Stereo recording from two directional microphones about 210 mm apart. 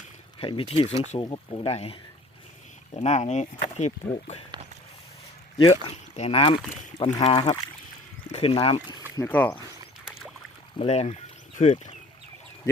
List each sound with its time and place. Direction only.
0.3 s speech: 25° left (ahead or behind)
5.7 s speech: 30° left (ahead or behind)
9.1 s speech: 10° left (ahead or behind)
10.8 s speech: 30° left (ahead or behind)